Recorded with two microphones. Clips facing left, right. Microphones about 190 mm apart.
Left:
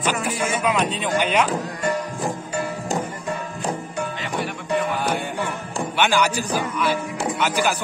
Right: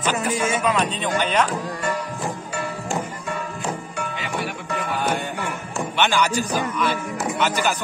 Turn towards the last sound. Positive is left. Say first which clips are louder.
# even
turn(degrees=10)  # may be behind; listen again after turning